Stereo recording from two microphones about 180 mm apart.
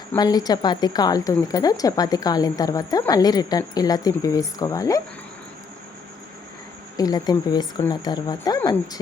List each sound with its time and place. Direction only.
0.2 s speech: 20° left (ahead or behind)
6.9 s speech: 20° left (ahead or behind)